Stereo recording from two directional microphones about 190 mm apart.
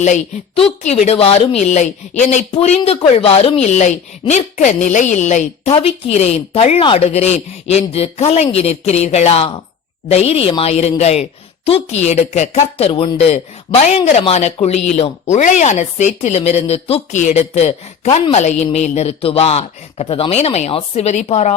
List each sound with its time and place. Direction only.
0.0 s speech: 35° left (ahead or behind)